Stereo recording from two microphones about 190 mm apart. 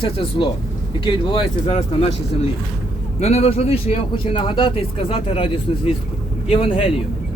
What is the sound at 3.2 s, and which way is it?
A man's voice, 35° left (ahead or behind).